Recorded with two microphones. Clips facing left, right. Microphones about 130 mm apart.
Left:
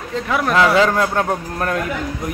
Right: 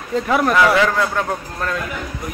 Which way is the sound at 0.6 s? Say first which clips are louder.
Left 4 dB; 25° left (ahead or behind).